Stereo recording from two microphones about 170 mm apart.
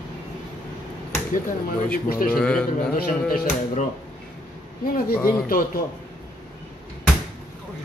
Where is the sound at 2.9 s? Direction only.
55° left (ahead or behind).